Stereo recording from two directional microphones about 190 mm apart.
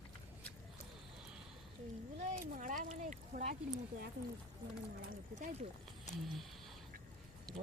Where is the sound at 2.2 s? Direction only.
40° right (ahead or behind).